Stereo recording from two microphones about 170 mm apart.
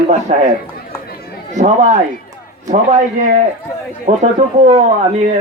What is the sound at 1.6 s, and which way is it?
Speech, 45° right (ahead or behind).